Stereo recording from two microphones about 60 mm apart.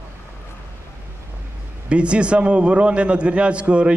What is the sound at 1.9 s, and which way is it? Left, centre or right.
A man's voice, centre.